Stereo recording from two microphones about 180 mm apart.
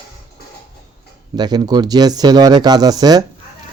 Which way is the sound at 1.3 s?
25° right (ahead or behind).